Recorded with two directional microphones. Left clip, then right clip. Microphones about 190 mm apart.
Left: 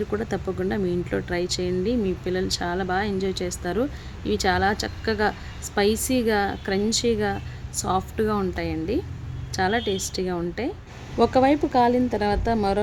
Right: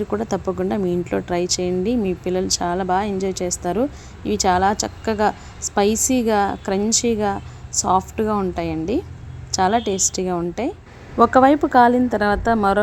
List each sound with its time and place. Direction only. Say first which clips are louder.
0.1 s speech: right 5 dB; 20° right (ahead or behind)